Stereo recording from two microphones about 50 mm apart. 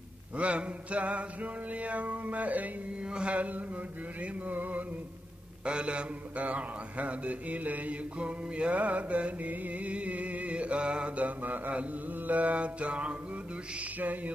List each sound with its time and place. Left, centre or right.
0.4 s mantra: right
5.7 s mantra: right